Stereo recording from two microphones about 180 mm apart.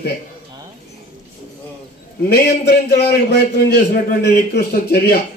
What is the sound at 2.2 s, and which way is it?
A man's voice, 60° left (ahead or behind).